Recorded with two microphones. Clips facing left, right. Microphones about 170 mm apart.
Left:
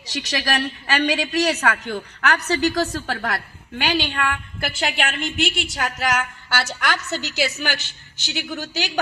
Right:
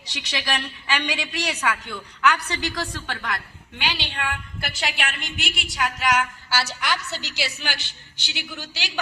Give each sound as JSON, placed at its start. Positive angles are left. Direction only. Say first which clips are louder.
{"t": 0.0, "sound": "a woman's voice", "louder": "left 5 dB", "side_deg": 45}